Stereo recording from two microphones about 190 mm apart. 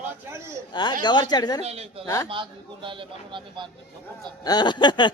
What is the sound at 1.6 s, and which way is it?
A man's voice, 30° right (ahead or behind).